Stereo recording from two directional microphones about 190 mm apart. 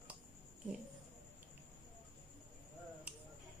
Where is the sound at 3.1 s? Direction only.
5° right (ahead or behind).